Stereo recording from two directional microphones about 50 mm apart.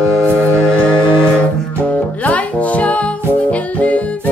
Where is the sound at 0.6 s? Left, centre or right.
Left.